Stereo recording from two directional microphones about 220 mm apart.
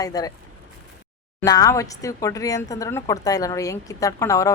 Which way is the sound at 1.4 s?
15° left (ahead or behind).